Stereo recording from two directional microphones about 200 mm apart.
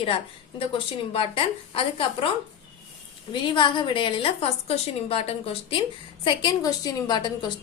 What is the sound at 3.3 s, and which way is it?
A woman's voice, 25° left (ahead or behind).